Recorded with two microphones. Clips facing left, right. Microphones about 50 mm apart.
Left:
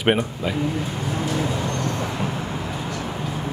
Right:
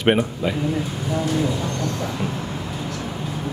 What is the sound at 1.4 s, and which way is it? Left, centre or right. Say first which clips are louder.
Vehicle: right 1 dB; left.